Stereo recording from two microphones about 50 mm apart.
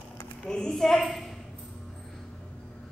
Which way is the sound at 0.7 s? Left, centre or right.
Centre.